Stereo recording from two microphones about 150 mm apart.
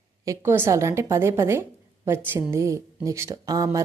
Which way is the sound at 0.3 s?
15° right (ahead or behind).